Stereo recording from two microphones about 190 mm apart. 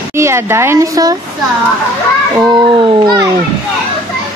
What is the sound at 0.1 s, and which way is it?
Speech, 15° right (ahead or behind).